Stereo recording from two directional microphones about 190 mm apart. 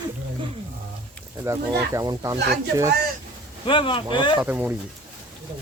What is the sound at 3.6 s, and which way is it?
Speech, 25° left (ahead or behind).